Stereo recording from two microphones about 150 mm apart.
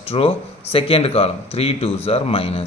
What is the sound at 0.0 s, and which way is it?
Speech, 40° left (ahead or behind).